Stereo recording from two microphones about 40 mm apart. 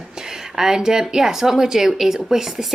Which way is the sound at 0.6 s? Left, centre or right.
Centre.